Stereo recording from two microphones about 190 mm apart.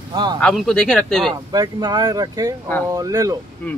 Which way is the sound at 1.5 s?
20° right (ahead or behind).